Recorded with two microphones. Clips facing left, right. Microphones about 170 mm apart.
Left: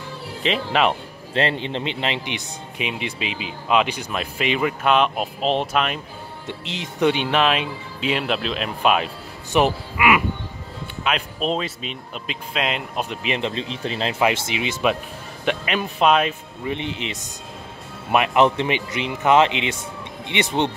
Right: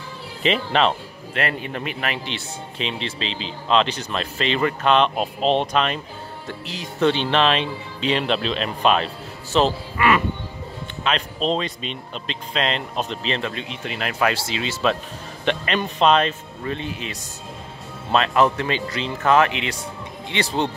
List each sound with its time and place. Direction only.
0.4 s speech: centre (ahead or behind)
1.3 s speech: 25° left (ahead or behind); by 5.9 s 5° left (ahead or behind)
6.4 s speech: 20° left (ahead or behind)
13.5 s speech: 30° left (ahead or behind)
14.2 s speech: 20° left (ahead or behind)